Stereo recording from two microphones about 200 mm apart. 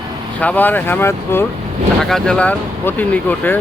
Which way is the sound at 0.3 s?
10° left (ahead or behind).